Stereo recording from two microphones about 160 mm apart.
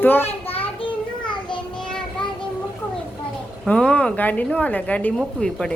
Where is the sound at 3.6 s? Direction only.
5° left (ahead or behind).